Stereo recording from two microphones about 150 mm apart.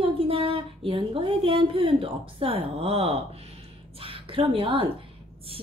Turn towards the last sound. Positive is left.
turn(degrees=-35)  # may be behind; listen again after turning